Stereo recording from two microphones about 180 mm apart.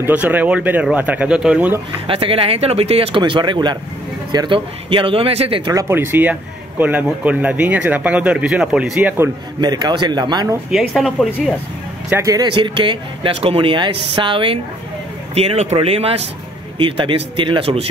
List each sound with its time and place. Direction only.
0.0 s speech: 10° right (ahead or behind)
2.0 s speech: 30° right (ahead or behind)
5.7 s speech: 15° right (ahead or behind)
9.2 s speech: 20° right (ahead or behind)
10.7 s speech: centre (ahead or behind)
12.1 s speech: 15° right (ahead or behind)
12.5 s speech: 25° right (ahead or behind)